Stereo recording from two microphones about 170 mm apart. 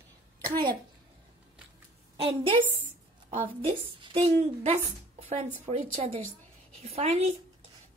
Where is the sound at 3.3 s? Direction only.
35° right (ahead or behind).